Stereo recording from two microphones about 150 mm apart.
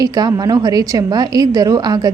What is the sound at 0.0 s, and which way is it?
A woman's voice, 25° right (ahead or behind).